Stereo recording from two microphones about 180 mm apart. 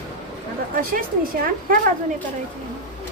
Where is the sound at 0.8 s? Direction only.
50° right (ahead or behind).